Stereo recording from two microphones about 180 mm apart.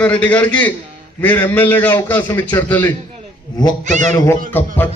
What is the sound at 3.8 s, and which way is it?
Speech, 45° right (ahead or behind).